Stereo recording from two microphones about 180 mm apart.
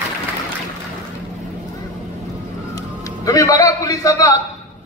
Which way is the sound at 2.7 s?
20° left (ahead or behind).